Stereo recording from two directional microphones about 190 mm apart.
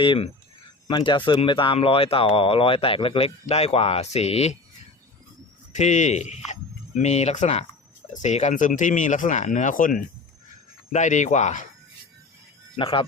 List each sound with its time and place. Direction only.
0.0 s speech: 25° left (ahead or behind)
5.7 s speech: 40° left (ahead or behind)
12.7 s speech: 30° left (ahead or behind)